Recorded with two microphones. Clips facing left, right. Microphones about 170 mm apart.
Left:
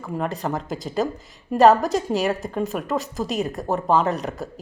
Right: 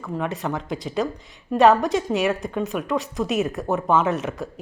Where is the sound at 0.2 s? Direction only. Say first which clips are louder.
Left 1 dB; centre (ahead or behind).